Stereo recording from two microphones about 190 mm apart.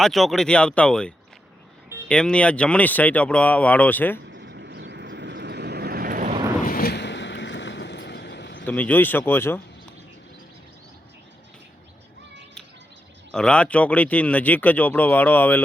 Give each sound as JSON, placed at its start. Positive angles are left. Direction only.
{"t": 0.0, "sound": "speech", "side_deg": 0}
{"t": 4.3, "sound": "vehicle", "side_deg": -65}
{"t": 6.7, "sound": "boat", "side_deg": 50}
{"t": 8.6, "sound": "speech", "side_deg": 10}
{"t": 13.3, "sound": "speech", "side_deg": 5}